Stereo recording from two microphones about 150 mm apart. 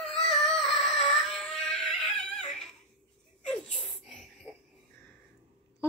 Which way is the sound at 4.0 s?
Centre (ahead or behind).